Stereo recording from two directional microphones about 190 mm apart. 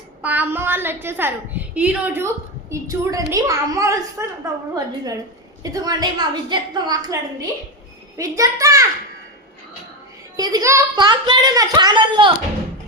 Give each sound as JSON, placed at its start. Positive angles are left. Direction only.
{"t": 0.2, "sound": "a woman's voice", "side_deg": -10}
{"t": 5.6, "sound": "a child's voice", "side_deg": -20}
{"t": 10.3, "sound": "a child's voice", "side_deg": -20}